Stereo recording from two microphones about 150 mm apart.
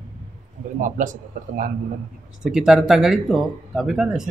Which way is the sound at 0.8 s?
60° right (ahead or behind).